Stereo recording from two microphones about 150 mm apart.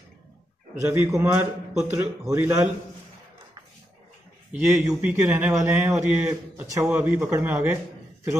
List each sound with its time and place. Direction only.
0.8 s a man's voice: 15° right (ahead or behind)
1.7 s a man's voice: 5° right (ahead or behind)
2.0 s a man's voice: 15° right (ahead or behind)
4.5 s a man's voice: 10° right (ahead or behind)